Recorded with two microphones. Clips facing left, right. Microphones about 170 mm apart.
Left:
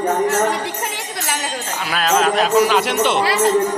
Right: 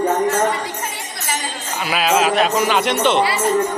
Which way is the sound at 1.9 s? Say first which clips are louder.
Even; 5° right (ahead or behind).